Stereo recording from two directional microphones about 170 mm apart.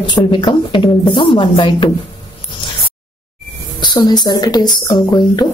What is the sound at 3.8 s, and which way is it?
Speech, 25° left (ahead or behind).